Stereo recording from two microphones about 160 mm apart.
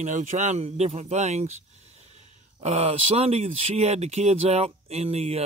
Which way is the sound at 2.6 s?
40° right (ahead or behind).